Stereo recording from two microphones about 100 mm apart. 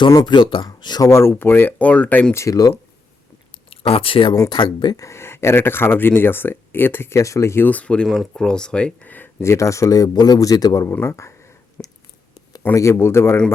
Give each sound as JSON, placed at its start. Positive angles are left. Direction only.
{"t": 0.3, "sound": "speech", "side_deg": 50}
{"t": 1.1, "sound": "speech", "side_deg": 25}
{"t": 2.3, "sound": "speech", "side_deg": 30}
{"t": 3.7, "sound": "speech", "side_deg": 70}
{"t": 4.4, "sound": "speech", "side_deg": 50}
{"t": 4.9, "sound": "speech", "side_deg": 30}
{"t": 11.2, "sound": "a sound", "side_deg": 25}
{"t": 12.7, "sound": "speech", "side_deg": 30}